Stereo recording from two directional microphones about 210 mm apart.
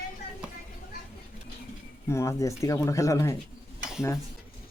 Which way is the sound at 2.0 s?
15° left (ahead or behind).